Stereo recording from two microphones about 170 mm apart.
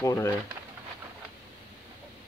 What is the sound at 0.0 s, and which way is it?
Speech, 20° left (ahead or behind).